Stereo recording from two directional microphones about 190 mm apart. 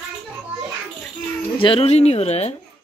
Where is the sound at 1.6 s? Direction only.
30° left (ahead or behind).